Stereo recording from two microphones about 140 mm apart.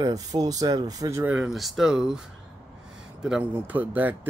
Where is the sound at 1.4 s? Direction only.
Centre (ahead or behind).